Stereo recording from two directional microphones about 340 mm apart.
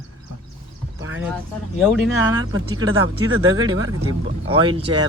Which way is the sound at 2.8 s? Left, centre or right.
Right.